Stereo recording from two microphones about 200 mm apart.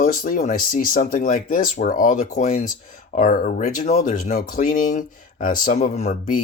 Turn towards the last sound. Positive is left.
turn(degrees=35)  # may be behind; listen again after turning